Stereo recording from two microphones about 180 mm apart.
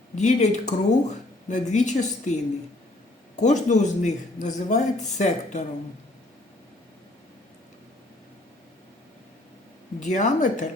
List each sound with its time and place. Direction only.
0.2 s a man's voice: 40° left (ahead or behind)
3.4 s a man's voice: 45° left (ahead or behind)
10.0 s a man's voice: 40° left (ahead or behind)